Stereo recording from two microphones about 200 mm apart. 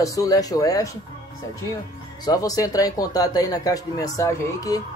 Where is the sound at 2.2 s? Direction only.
20° left (ahead or behind).